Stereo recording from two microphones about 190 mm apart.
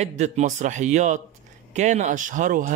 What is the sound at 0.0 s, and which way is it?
A man's voice, 35° right (ahead or behind).